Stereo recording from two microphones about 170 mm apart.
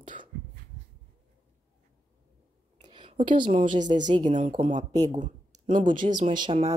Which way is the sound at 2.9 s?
30° right (ahead or behind).